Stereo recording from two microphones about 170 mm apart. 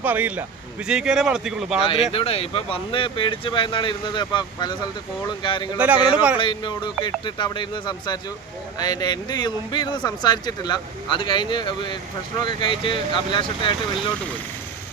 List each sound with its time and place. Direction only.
0.0 s a man's voice: 10° right (ahead or behind)
1.8 s speech: 35° left (ahead or behind)
5.7 s a man's voice: 10° right (ahead or behind)
6.4 s speech: 30° left (ahead or behind)